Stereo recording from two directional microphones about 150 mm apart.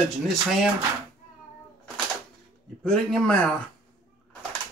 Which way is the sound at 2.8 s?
5° left (ahead or behind).